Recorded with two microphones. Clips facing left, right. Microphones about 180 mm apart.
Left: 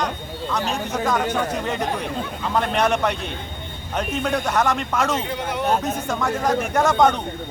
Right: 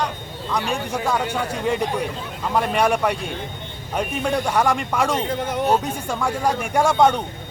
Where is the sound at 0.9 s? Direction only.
10° right (ahead or behind).